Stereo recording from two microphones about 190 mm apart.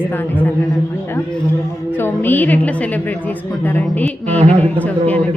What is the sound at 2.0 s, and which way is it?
A man's voice, 10° left (ahead or behind).